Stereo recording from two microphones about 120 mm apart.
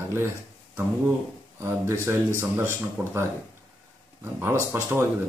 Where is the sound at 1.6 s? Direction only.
25° right (ahead or behind).